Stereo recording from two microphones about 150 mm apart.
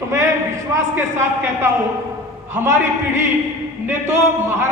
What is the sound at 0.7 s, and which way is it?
A man's voice, 15° right (ahead or behind).